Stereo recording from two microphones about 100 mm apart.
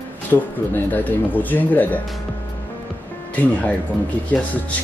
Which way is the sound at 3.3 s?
15° left (ahead or behind).